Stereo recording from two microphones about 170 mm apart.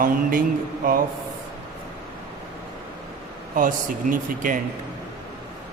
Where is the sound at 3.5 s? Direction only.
50° right (ahead or behind).